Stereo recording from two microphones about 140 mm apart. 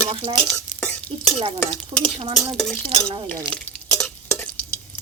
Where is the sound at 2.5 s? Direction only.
5° left (ahead or behind).